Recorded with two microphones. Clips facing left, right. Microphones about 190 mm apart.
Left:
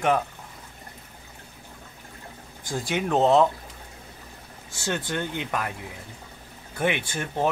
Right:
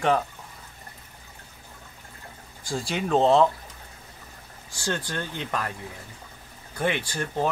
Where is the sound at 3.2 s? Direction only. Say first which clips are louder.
Even; centre (ahead or behind).